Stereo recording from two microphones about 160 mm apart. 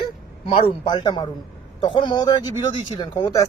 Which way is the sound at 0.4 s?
35° left (ahead or behind).